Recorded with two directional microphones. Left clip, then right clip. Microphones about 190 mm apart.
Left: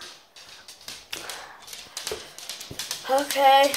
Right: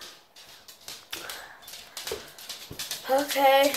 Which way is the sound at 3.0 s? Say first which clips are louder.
Left 3 dB; 10° right (ahead or behind).